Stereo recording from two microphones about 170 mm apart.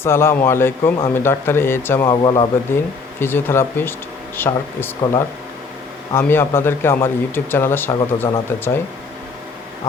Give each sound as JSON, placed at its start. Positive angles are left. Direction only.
{"t": 0.0, "sound": "a man's voice", "side_deg": 15}
{"t": 2.0, "sound": "speech", "side_deg": 25}
{"t": 3.2, "sound": "a man's voice", "side_deg": 15}